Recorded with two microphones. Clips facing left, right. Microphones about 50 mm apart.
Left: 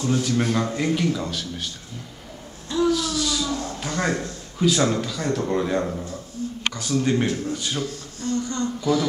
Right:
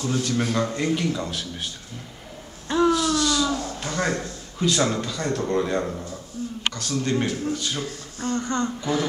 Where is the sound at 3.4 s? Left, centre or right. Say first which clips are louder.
Right 2 dB; centre.